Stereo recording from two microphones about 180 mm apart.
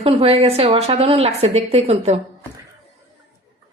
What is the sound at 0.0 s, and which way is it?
A woman's voice, 35° right (ahead or behind).